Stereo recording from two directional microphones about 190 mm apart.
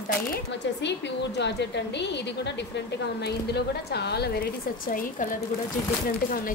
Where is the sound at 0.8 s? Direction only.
65° left (ahead or behind).